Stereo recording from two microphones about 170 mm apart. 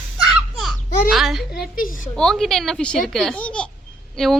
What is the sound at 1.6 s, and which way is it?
Speech, 55° left (ahead or behind).